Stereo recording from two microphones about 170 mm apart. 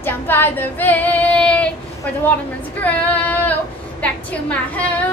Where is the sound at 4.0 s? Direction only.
10° left (ahead or behind).